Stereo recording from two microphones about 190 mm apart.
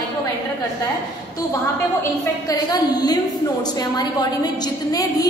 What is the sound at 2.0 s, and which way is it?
A woman's voice, 20° left (ahead or behind).